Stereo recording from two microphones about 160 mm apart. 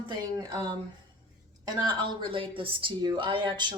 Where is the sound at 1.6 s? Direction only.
30° right (ahead or behind).